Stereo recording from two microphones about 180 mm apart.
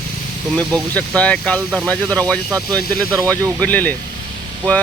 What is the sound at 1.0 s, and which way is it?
Speech, 5° left (ahead or behind).